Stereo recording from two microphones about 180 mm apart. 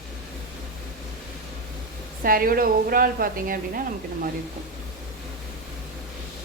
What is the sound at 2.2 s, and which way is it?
A woman's voice, 55° right (ahead or behind).